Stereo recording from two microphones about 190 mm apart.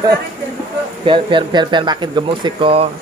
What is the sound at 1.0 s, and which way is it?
Speech, 25° right (ahead or behind).